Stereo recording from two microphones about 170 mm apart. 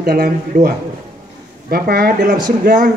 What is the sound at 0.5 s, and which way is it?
Speech, 50° right (ahead or behind).